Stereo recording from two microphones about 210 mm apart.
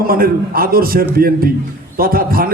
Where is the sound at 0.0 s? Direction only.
45° right (ahead or behind).